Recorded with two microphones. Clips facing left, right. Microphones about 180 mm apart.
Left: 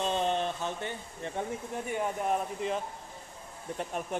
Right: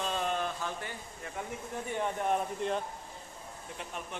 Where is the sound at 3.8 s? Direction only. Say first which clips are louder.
Left 7 dB; 45° left (ahead or behind).